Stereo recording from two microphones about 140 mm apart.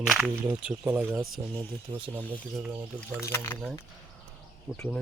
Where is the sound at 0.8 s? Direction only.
15° right (ahead or behind).